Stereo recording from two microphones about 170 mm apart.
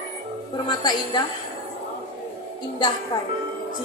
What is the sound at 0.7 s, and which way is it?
Speech, 25° left (ahead or behind).